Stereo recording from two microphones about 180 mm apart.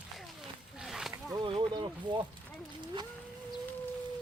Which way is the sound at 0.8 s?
Centre (ahead or behind).